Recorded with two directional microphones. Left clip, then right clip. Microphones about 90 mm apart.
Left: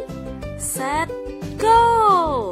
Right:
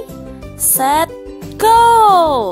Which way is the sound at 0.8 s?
90° right.